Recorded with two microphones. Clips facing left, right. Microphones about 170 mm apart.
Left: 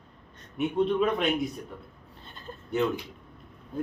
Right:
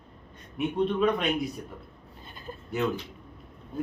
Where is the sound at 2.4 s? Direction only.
5° right (ahead or behind).